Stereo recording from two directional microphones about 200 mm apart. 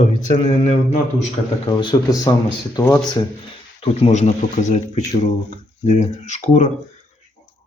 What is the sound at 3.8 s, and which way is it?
Speech, 30° left (ahead or behind).